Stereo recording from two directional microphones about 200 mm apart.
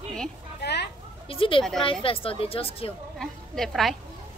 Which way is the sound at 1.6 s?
Centre (ahead or behind).